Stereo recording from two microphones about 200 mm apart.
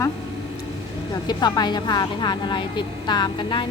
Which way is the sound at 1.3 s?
20° left (ahead or behind).